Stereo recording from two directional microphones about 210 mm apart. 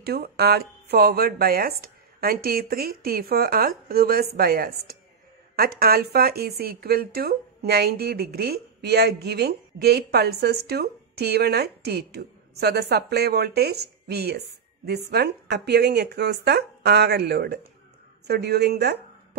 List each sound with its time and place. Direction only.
0.0 s speech: 50° right (ahead or behind)